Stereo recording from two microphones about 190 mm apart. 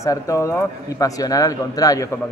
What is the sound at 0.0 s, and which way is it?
A man's voice, 15° left (ahead or behind).